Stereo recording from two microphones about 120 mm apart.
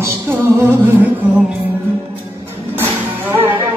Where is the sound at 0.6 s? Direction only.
15° right (ahead or behind).